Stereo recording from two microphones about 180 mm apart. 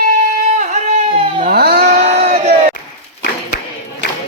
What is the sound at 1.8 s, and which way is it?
Crowd, 40° right (ahead or behind).